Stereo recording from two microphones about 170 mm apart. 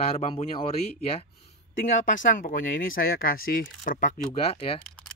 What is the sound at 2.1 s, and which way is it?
Speech, 50° left (ahead or behind).